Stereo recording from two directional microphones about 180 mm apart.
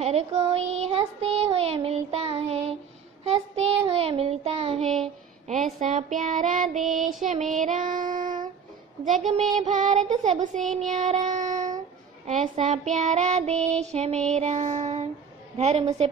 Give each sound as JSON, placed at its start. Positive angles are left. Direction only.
{"t": 0.0, "sound": "child singing", "side_deg": -35}